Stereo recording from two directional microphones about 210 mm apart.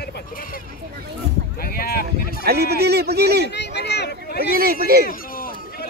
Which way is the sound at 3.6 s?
55° left (ahead or behind).